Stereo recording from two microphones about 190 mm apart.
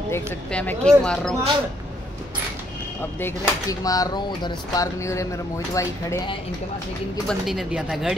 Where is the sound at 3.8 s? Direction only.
20° left (ahead or behind).